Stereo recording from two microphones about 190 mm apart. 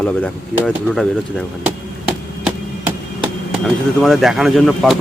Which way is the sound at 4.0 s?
Centre (ahead or behind).